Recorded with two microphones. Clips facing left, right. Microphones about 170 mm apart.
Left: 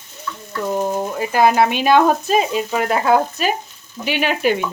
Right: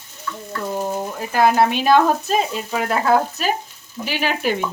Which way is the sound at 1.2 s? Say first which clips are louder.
Left 1 dB; 5° left (ahead or behind).